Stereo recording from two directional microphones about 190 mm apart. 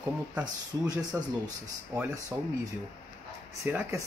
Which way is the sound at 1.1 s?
15° right (ahead or behind).